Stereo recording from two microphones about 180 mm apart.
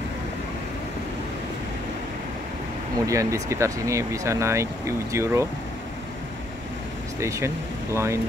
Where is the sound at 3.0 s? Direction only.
15° right (ahead or behind).